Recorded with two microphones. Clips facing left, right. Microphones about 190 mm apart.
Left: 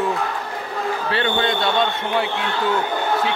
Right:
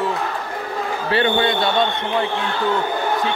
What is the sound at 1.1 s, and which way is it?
Speech, 15° right (ahead or behind).